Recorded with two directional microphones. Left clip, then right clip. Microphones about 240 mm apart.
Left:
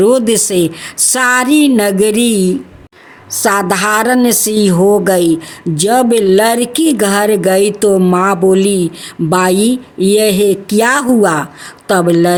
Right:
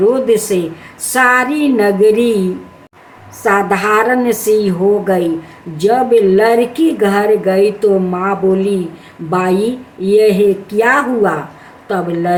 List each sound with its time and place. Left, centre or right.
0.0 s a woman's voice: left